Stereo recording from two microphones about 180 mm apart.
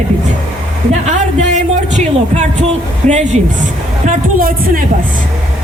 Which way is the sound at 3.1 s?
40° right (ahead or behind).